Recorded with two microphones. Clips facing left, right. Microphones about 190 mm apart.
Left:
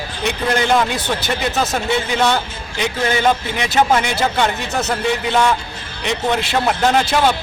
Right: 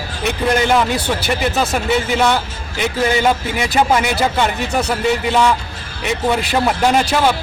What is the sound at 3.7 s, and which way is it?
A man's voice, 10° right (ahead or behind).